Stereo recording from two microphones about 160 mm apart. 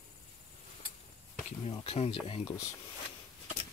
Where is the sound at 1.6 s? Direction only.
35° left (ahead or behind).